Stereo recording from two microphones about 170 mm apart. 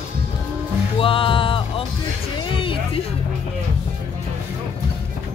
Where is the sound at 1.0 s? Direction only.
30° left (ahead or behind).